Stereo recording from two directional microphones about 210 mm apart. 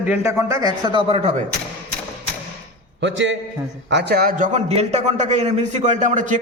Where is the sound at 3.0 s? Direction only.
60° right (ahead or behind); by 6.4 s 35° right (ahead or behind).